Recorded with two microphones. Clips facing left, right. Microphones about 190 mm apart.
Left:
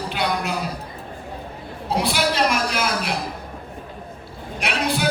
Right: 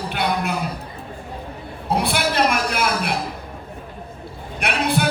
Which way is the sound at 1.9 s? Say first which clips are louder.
Right 1 dB; 55° right (ahead or behind).